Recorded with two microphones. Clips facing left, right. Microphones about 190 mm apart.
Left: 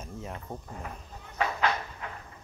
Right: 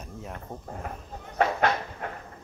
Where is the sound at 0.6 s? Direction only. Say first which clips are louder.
Right 4 dB; 50° right (ahead or behind).